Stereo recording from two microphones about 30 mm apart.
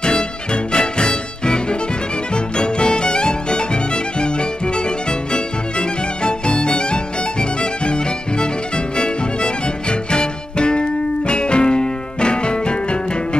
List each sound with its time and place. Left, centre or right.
0.7 s music: left
5.3 s music: left